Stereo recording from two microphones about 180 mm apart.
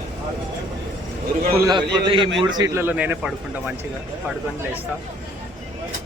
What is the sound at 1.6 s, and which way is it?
A man's voice, 25° right (ahead or behind).